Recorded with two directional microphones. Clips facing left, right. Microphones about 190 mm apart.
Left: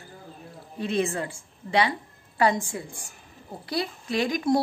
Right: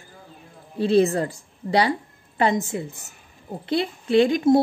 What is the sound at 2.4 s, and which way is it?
A woman's voice, 20° right (ahead or behind).